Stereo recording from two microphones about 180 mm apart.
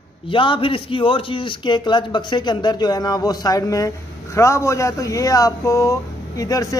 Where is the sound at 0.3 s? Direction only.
30° left (ahead or behind).